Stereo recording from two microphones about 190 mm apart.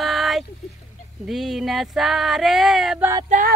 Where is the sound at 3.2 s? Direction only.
45° right (ahead or behind).